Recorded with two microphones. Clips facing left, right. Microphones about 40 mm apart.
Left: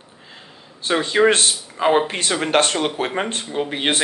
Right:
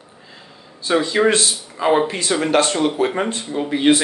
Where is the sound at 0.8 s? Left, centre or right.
Left.